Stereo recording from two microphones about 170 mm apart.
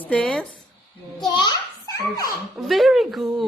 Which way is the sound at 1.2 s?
20° left (ahead or behind).